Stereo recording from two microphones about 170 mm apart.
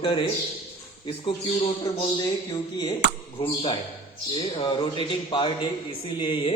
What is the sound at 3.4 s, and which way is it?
A man's voice, 30° left (ahead or behind).